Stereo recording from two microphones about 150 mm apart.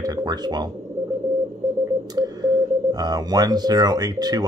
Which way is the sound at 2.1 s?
25° right (ahead or behind).